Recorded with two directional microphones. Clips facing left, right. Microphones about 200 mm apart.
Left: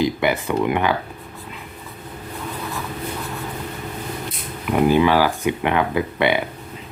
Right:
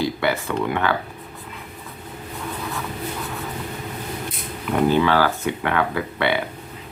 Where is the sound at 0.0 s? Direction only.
15° left (ahead or behind).